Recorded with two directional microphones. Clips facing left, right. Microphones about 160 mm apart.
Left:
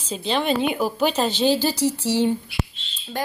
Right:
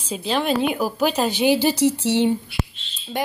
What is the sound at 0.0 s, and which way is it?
Speech, 5° right (ahead or behind).